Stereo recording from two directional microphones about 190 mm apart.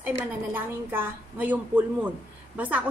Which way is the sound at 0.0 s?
10° right (ahead or behind).